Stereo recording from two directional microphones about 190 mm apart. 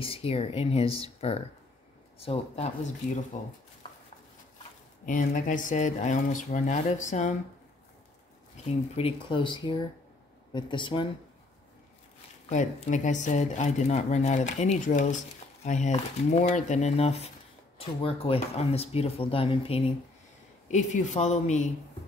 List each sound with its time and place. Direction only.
0.0 s speech: 30° left (ahead or behind)
3.8 s a sound: 25° left (ahead or behind)
5.0 s speech: 45° left (ahead or behind)
8.9 s speech: 30° left (ahead or behind)
12.4 s speech: 40° left (ahead or behind)
20.6 s speech: 40° left (ahead or behind)